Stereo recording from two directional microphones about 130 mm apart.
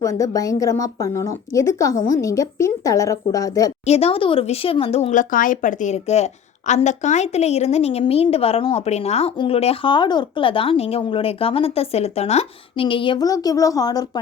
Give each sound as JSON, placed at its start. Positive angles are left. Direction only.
{"t": 0.0, "sound": "a woman's voice", "side_deg": 25}
{"t": 3.8, "sound": "speech", "side_deg": 50}
{"t": 5.1, "sound": "a woman's voice", "side_deg": 90}
{"t": 13.1, "sound": "a woman's voice", "side_deg": 30}